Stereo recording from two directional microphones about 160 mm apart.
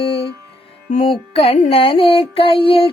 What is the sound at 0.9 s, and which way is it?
Child singing, 40° left (ahead or behind).